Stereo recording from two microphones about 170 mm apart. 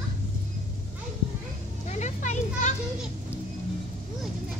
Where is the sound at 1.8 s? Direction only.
45° left (ahead or behind).